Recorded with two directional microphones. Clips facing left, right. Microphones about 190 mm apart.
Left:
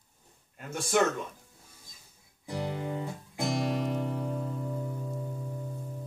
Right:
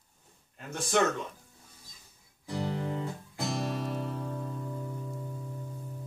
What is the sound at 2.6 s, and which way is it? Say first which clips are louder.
Music: right 1 dB; 15° left (ahead or behind).